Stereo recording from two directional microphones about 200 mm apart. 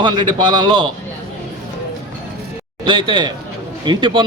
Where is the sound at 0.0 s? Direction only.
25° right (ahead or behind).